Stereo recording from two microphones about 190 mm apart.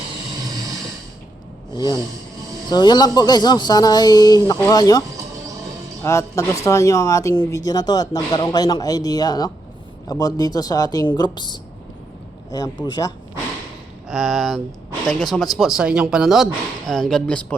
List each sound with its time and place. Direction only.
1.7 s speech: 20° left (ahead or behind)
14.1 s speech: centre (ahead or behind)